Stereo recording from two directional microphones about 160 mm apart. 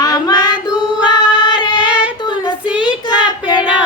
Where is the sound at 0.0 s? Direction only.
25° left (ahead or behind).